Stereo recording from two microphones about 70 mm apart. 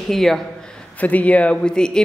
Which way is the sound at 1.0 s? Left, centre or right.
Left.